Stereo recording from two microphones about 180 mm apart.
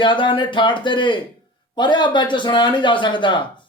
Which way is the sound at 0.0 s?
25° left (ahead or behind).